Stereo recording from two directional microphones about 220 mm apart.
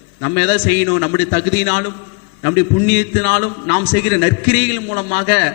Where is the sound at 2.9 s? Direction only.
15° left (ahead or behind).